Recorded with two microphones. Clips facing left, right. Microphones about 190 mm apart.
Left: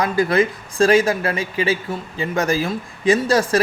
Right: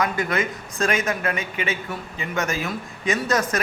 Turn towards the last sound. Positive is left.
turn(degrees=30)  # may be behind; listen again after turning